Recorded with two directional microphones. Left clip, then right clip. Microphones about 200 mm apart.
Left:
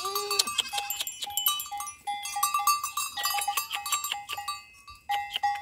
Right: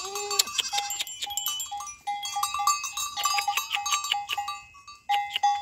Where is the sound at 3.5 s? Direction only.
10° right (ahead or behind).